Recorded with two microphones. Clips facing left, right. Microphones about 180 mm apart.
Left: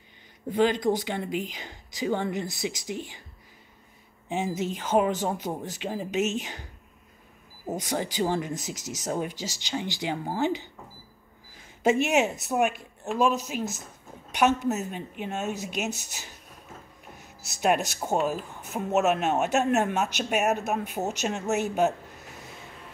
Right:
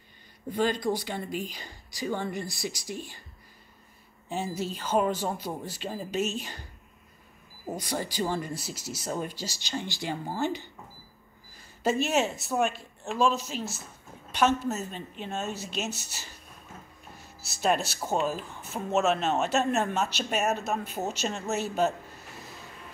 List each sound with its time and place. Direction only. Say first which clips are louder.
0.5 s speech: left 4 dB; 15° left (ahead or behind)
4.4 s speech: left 3 dB; 15° left (ahead or behind)
12.2 s speech: left 3 dB; 20° left (ahead or behind)
12.5 s speech: left 2 dB; 10° left (ahead or behind)
17.6 s speech: left 2 dB; 10° left (ahead or behind)